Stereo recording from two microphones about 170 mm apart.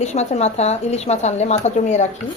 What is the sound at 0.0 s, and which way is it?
A woman's voice, 40° left (ahead or behind).